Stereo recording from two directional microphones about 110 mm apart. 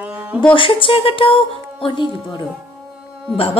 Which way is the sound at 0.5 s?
50° left (ahead or behind).